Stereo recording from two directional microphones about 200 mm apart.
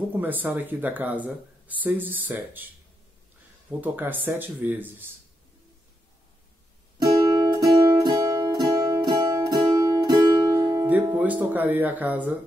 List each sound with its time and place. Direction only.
0.1 s speech: 10° right (ahead or behind)
3.8 s speech: 10° right (ahead or behind)
7.0 s music: 20° right (ahead or behind)